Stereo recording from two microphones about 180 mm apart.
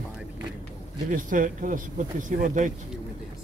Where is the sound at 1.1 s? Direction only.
50° right (ahead or behind).